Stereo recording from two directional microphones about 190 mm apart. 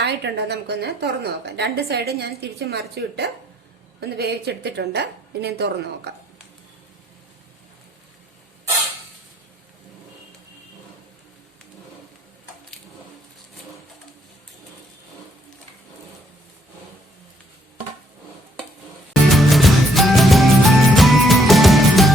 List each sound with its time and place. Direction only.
0.0 s a woman's voice: 60° right (ahead or behind)
19.3 s music: centre (ahead or behind)